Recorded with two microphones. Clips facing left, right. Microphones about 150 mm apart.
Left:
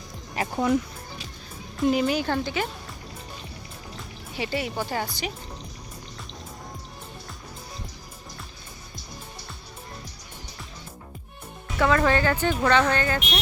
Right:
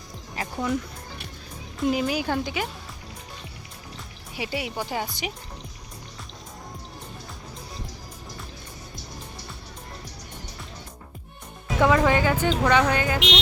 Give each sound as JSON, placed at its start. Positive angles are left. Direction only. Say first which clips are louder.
{"t": 0.3, "sound": "speech", "louder": "left 4 dB", "side_deg": 30}
{"t": 1.9, "sound": "speech", "louder": "left 1 dB", "side_deg": -5}
{"t": 4.4, "sound": "speech", "louder": "left 2 dB", "side_deg": -10}
{"t": 11.8, "sound": "speech", "louder": "right 1 dB", "side_deg": -15}
{"t": 13.1, "sound": "music", "louder": "right 3 dB", "side_deg": -90}